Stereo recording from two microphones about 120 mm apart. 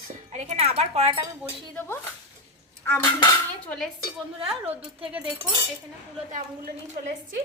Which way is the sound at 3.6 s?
5° left (ahead or behind).